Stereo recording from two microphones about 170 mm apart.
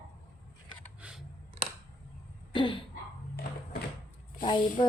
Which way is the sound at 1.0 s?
5° right (ahead or behind).